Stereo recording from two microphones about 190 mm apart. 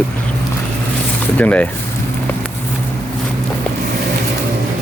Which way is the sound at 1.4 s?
10° left (ahead or behind).